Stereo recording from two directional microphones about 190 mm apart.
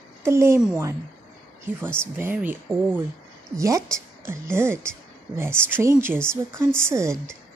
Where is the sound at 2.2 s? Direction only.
10° right (ahead or behind).